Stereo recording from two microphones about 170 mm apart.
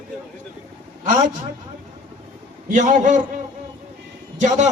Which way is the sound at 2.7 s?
50° right (ahead or behind).